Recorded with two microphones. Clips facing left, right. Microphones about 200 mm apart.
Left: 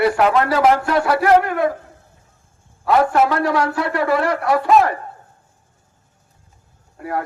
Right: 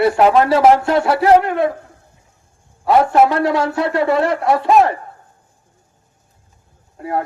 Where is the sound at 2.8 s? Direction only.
25° right (ahead or behind).